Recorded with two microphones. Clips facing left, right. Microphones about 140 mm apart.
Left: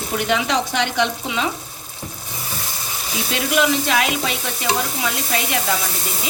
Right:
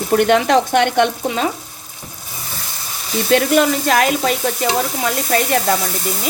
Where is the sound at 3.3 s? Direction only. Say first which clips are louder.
Right 6 dB; 45° right (ahead or behind).